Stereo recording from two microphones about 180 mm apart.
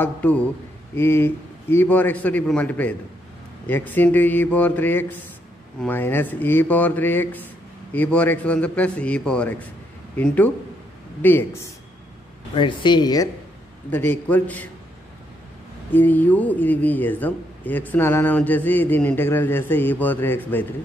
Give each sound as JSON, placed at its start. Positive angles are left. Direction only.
{"t": 0.0, "sound": "speech", "side_deg": 10}
{"t": 12.5, "sound": "speech", "side_deg": 25}
{"t": 13.8, "sound": "speech", "side_deg": 10}
{"t": 15.9, "sound": "speech", "side_deg": 10}